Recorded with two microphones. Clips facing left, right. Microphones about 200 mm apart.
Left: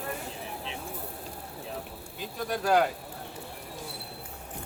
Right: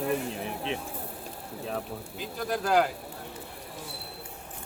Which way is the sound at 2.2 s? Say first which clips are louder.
Even; centre (ahead or behind).